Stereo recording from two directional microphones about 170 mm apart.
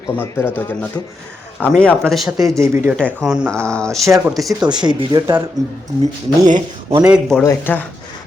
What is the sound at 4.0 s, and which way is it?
Speech, 15° right (ahead or behind).